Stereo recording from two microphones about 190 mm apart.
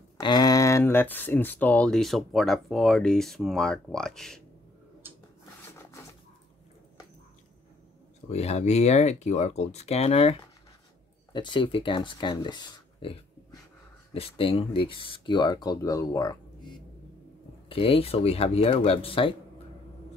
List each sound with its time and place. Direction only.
0.2 s speech: 20° left (ahead or behind); by 4.4 s centre (ahead or behind)
8.3 s speech: 35° left (ahead or behind)
11.3 s speech: 25° left (ahead or behind)
17.6 s speech: 30° left (ahead or behind)